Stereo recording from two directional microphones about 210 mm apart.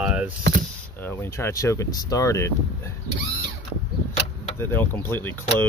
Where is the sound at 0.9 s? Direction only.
10° left (ahead or behind).